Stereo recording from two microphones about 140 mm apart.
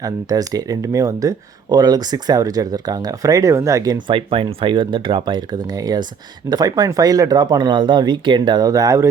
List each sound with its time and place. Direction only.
0.0 s speech: 25° right (ahead or behind)
4.1 s speech: 40° right (ahead or behind)